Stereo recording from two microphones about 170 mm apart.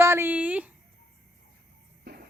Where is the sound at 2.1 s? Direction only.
80° right.